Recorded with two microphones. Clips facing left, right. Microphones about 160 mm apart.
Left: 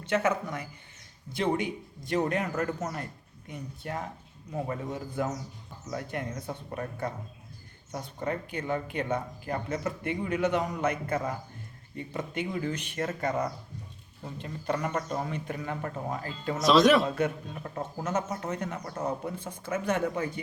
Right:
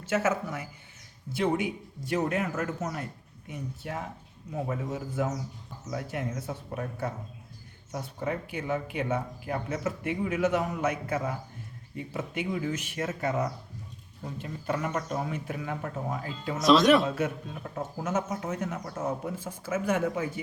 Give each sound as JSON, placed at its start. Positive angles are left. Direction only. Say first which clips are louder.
{"t": 0.0, "sound": "a man's voice", "louder": "even", "side_deg": -5}